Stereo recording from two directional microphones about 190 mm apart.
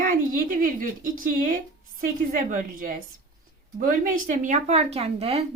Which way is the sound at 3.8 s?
45° right (ahead or behind).